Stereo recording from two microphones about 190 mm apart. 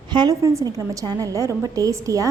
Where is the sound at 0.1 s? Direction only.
20° right (ahead or behind).